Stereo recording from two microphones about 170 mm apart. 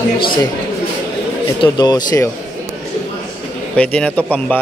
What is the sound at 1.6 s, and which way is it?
Speech, 25° left (ahead or behind).